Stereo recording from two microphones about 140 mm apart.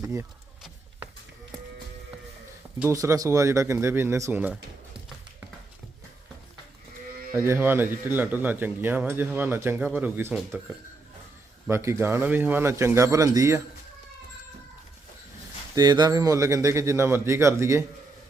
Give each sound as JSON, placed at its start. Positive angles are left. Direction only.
{"t": 2.9, "sound": "speech", "side_deg": -25}
{"t": 7.3, "sound": "speech", "side_deg": -15}
{"t": 11.7, "sound": "speech", "side_deg": -20}
{"t": 15.7, "sound": "speech", "side_deg": -30}